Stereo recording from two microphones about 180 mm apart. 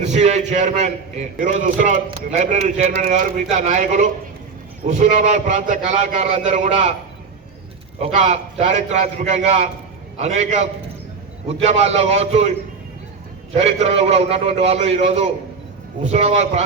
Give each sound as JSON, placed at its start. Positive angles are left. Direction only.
{"t": 0.0, "sound": "a man's voice", "side_deg": -40}
{"t": 8.0, "sound": "a man's voice", "side_deg": -35}